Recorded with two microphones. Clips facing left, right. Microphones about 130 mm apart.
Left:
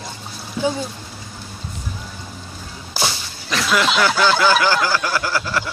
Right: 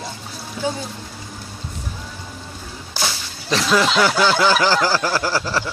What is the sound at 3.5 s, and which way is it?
Snicker, 30° right (ahead or behind).